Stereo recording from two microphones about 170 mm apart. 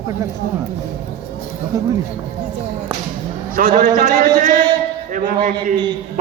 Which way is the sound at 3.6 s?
50° right (ahead or behind).